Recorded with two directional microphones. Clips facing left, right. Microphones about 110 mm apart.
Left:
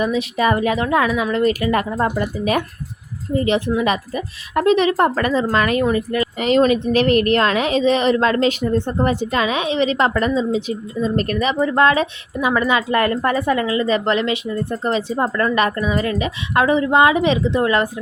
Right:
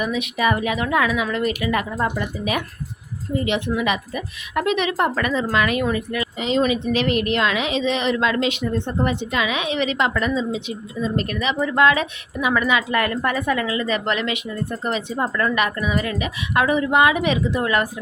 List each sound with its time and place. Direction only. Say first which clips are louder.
0.0 s a woman's voice: left 3 dB; 35° left (ahead or behind)
3.8 s a woman's voice: left 3 dB; 35° left (ahead or behind)
6.4 s a woman's voice: left 5 dB; 50° left (ahead or behind); by 17.8 s 30° left (ahead or behind)